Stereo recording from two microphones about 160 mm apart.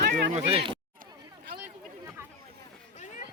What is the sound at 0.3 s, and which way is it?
Speech, 40° right (ahead or behind).